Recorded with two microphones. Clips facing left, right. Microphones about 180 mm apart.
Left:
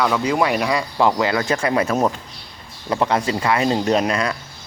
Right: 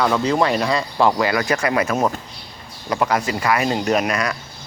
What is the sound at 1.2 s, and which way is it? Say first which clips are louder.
Speech: even; 25° left (ahead or behind).